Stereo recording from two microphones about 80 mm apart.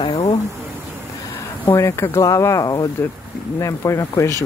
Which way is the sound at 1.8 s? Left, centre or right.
Left.